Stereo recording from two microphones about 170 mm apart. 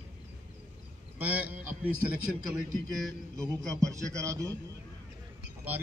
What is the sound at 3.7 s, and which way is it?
Speech, 20° right (ahead or behind).